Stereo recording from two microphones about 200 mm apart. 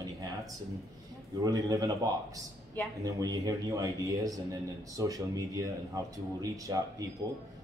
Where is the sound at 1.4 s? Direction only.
15° right (ahead or behind).